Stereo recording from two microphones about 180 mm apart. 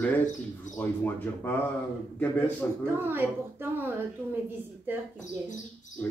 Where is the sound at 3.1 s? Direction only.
10° right (ahead or behind).